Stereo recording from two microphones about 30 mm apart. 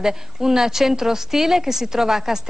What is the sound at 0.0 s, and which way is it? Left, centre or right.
A woman's voice, centre.